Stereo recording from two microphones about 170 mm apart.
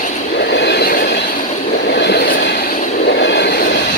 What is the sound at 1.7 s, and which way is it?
Vehicle, 80° left.